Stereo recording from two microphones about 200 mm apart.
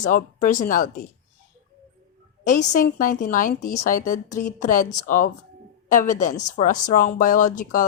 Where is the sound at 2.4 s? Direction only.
40° left (ahead or behind).